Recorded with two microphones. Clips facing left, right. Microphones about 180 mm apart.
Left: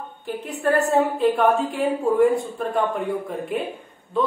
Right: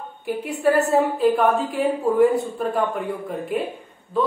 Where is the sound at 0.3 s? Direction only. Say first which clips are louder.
Right 2 dB; 10° right (ahead or behind).